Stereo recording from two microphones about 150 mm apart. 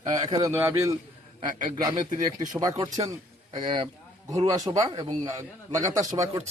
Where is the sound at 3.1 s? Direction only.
25° right (ahead or behind).